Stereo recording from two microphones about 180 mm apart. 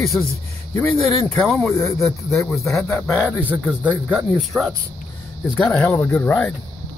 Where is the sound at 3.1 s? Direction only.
5° right (ahead or behind).